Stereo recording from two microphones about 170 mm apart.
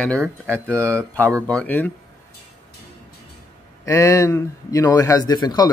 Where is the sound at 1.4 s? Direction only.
10° left (ahead or behind).